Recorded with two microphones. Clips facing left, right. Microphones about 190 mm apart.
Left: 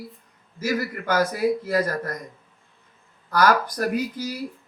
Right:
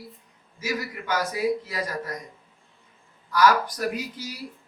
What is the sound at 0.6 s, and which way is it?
Speech, 50° left (ahead or behind).